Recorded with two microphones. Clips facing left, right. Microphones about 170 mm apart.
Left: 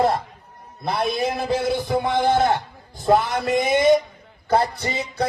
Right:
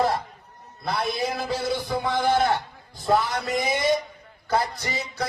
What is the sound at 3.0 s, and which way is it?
Speech, 50° left (ahead or behind).